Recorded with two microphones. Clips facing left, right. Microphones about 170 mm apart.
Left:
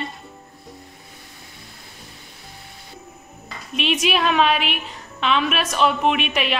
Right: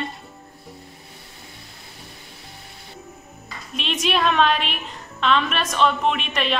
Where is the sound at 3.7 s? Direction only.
5° left (ahead or behind).